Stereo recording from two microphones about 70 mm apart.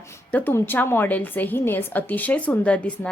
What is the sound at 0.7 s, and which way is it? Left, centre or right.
A woman's voice, left.